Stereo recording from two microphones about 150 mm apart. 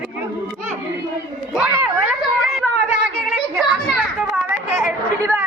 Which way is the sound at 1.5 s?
10° right (ahead or behind).